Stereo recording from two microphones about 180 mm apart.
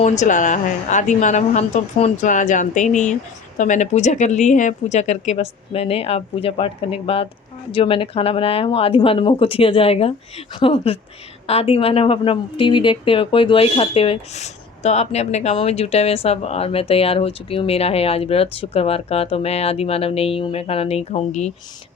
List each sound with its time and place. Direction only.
0.0 s a woman's voice: 45° left (ahead or behind)